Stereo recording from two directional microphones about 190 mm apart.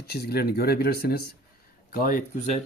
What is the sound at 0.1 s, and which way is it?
Speech, 55° left (ahead or behind).